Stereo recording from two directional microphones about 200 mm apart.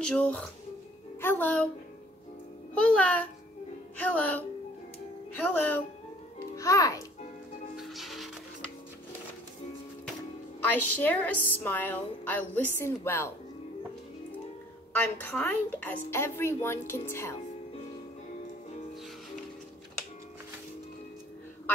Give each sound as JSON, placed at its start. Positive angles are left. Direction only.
{"t": 0.0, "sound": "a woman's voice", "side_deg": 5}
{"t": 2.7, "sound": "a woman's voice", "side_deg": 5}
{"t": 7.7, "sound": "music", "side_deg": 0}
{"t": 10.6, "sound": "a woman's voice", "side_deg": 10}
{"t": 14.9, "sound": "a woman's voice", "side_deg": 10}